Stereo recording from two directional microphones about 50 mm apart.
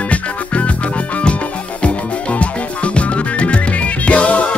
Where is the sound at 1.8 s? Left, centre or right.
Left.